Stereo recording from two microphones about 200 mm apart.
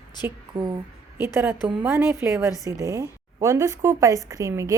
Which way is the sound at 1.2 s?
10° right (ahead or behind).